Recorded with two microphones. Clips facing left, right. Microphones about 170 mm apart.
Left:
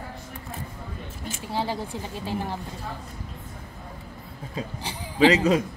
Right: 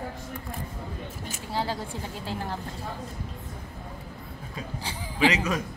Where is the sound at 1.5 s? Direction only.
15° left (ahead or behind).